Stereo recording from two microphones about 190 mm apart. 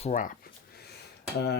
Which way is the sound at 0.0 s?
45° left (ahead or behind).